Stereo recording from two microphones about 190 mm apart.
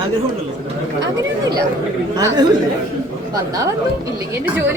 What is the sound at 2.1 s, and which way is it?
Speech, 20° right (ahead or behind).